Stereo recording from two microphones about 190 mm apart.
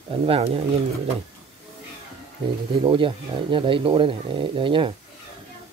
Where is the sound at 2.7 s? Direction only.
25° right (ahead or behind).